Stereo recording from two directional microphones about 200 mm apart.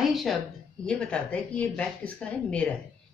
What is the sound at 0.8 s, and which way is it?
A woman's voice, 5° left (ahead or behind).